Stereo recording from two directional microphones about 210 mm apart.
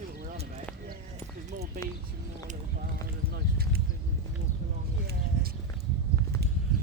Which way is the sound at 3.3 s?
45° right (ahead or behind).